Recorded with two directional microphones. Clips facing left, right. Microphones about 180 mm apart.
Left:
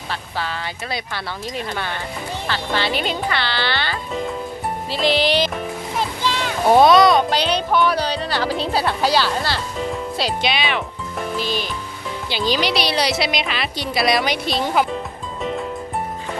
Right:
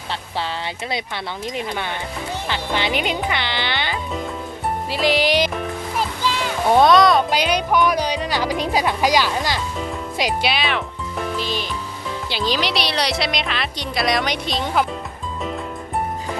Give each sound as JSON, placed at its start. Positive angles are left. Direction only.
{"t": 0.1, "sound": "speech", "side_deg": -25}
{"t": 6.0, "sound": "music", "side_deg": -10}
{"t": 6.7, "sound": "speech", "side_deg": 5}
{"t": 7.3, "sound": "speech", "side_deg": -10}
{"t": 10.5, "sound": "speech", "side_deg": 0}